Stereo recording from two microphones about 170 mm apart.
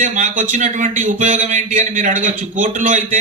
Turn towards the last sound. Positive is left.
turn(degrees=-50)  # may be behind; listen again after turning